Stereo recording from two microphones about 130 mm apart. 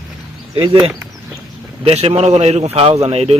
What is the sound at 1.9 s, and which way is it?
Speech, 50° right (ahead or behind).